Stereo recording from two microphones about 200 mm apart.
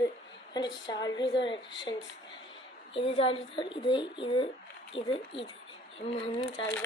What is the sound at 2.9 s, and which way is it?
Speech, 25° left (ahead or behind).